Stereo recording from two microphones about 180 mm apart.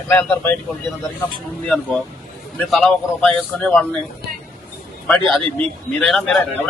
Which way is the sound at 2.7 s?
5° left (ahead or behind).